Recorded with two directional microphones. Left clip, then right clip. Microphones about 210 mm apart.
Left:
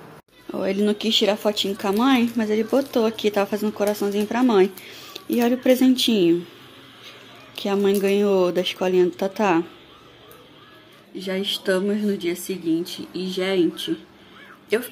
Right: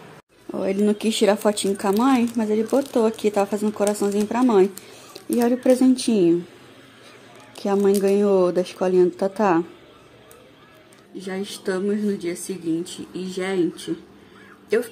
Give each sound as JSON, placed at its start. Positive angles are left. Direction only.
{"t": 0.5, "sound": "speech", "side_deg": -5}
{"t": 1.8, "sound": "speech", "side_deg": -10}
{"t": 7.5, "sound": "speech", "side_deg": -10}
{"t": 11.1, "sound": "speech", "side_deg": -5}